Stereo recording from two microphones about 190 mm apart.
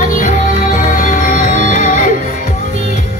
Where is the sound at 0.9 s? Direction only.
45° left (ahead or behind).